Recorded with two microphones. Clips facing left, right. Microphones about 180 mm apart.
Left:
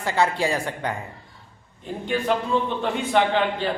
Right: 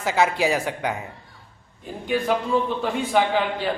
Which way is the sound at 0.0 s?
5° right (ahead or behind).